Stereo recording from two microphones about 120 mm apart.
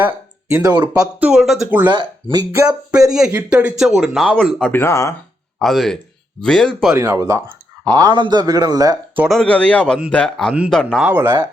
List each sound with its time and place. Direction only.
0.0 s a sound: 15° right (ahead or behind)
0.6 s speech: 35° right (ahead or behind)
1.2 s speech: 5° right (ahead or behind)
4.7 s speech: 20° left (ahead or behind)
5.5 s speech: centre (ahead or behind)
6.9 s speech: 25° right (ahead or behind)
7.9 s speech: 40° right (ahead or behind)
9.3 s a man's voice: 5° left (ahead or behind)
11.0 s speech: 15° right (ahead or behind)